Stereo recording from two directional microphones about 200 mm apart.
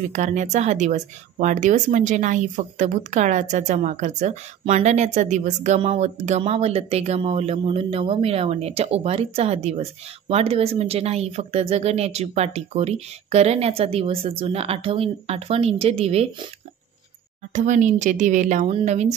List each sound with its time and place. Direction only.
0.1 s speech: 35° right (ahead or behind)
17.5 s speech: 40° right (ahead or behind)